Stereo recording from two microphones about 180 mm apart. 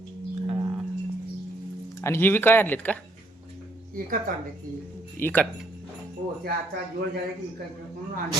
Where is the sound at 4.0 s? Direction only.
50° right (ahead or behind).